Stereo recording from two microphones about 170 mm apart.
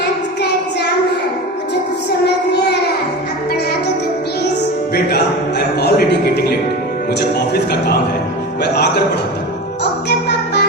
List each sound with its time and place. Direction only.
2.2 s child singing: 75° left (ahead or behind)
5.0 s music: 70° left (ahead or behind)
7.1 s a man's voice: 75° left (ahead or behind)
10.1 s music: 80° left